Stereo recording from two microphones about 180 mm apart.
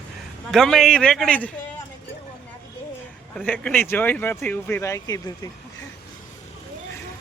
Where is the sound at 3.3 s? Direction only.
5° left (ahead or behind).